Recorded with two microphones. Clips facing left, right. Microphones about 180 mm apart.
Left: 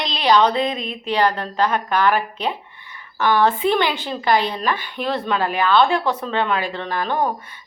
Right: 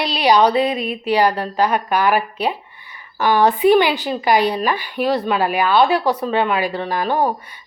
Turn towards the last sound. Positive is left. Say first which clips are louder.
# right 3 dB
turn(degrees=-10)  # may be behind; listen again after turning